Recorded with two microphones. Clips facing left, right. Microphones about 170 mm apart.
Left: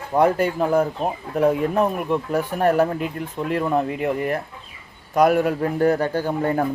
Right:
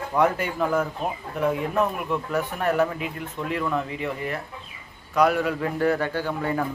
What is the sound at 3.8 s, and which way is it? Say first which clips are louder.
Speech: left 7 dB; 50° left (ahead or behind).